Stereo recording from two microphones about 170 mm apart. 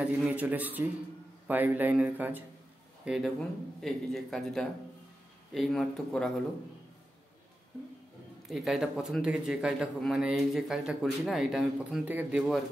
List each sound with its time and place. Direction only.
0.0 s speech: 10° right (ahead or behind)
8.5 s speech: centre (ahead or behind)